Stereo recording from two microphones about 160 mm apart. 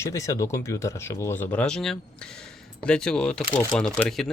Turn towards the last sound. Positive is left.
turn(degrees=5)  # may be behind; listen again after turning